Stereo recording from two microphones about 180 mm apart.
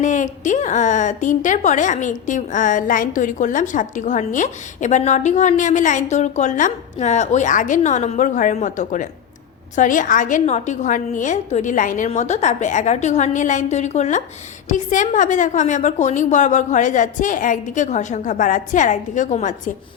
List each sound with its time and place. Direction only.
0.0 s a woman's voice: 45° left (ahead or behind)